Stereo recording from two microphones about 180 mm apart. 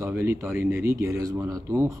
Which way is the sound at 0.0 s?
15° right (ahead or behind).